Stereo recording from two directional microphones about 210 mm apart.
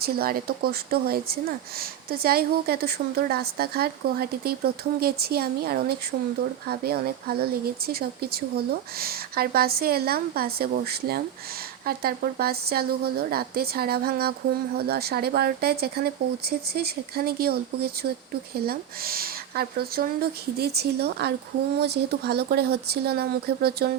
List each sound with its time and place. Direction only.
0.0 s speech: 45° right (ahead or behind)